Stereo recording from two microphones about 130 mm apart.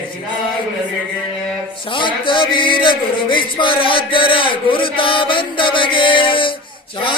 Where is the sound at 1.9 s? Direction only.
40° left (ahead or behind).